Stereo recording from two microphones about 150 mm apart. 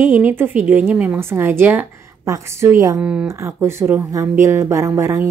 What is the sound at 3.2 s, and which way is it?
Speech, 20° right (ahead or behind).